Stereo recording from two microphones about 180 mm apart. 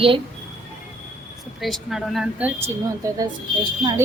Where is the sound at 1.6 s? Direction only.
Centre (ahead or behind).